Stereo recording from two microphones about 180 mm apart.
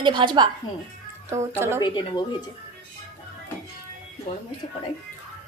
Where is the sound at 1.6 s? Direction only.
15° right (ahead or behind).